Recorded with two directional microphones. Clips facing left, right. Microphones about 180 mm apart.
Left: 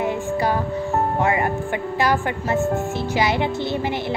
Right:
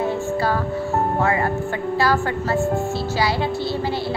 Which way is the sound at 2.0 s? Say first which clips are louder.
Right 1 dB; 20° left (ahead or behind).